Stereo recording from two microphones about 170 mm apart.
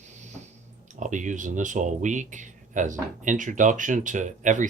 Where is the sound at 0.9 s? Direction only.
45° right (ahead or behind).